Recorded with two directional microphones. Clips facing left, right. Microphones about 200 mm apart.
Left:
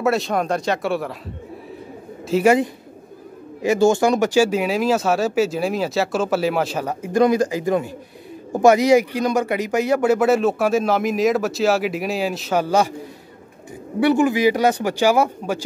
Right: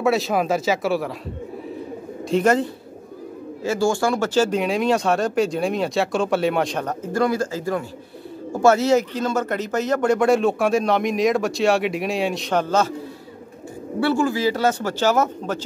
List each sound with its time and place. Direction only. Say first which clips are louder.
0.0 s speech: even; centre (ahead or behind)
2.2 s speech: left 2 dB; 5° left (ahead or behind)
13.9 s speech: left 4 dB; 20° left (ahead or behind)